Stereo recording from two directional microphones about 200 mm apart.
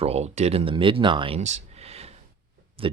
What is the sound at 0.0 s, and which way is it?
Speech, 30° right (ahead or behind).